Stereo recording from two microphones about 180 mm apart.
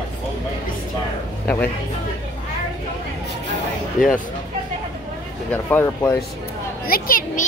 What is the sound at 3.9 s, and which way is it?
Speech, centre (ahead or behind).